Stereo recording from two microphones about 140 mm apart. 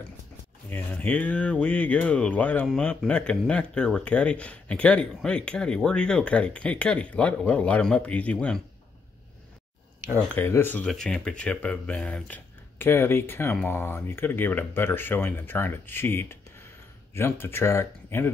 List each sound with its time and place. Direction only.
0.7 s speech: 10° left (ahead or behind)
10.3 s speech: 15° left (ahead or behind)